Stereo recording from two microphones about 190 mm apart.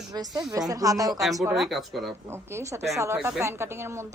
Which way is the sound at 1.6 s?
Centre (ahead or behind).